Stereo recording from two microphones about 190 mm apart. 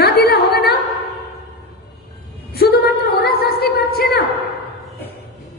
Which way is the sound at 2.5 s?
55° left (ahead or behind).